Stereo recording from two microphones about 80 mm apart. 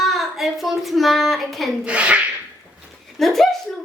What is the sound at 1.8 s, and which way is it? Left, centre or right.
Speech, centre.